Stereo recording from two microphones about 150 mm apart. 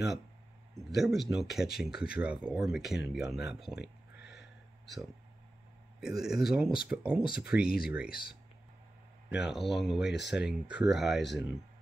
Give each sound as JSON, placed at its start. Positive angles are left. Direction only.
{"t": 0.9, "sound": "speech", "side_deg": 0}
{"t": 5.9, "sound": "speech", "side_deg": -5}
{"t": 7.5, "sound": "speech", "side_deg": 90}
{"t": 9.3, "sound": "speech", "side_deg": 0}